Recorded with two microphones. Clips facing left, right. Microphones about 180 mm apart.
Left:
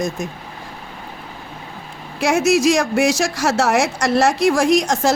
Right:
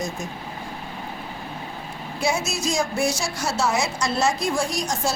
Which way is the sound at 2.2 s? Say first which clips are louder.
Left 10 dB; 80° left.